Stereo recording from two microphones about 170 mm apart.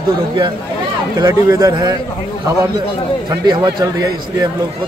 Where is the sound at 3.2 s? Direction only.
25° right (ahead or behind).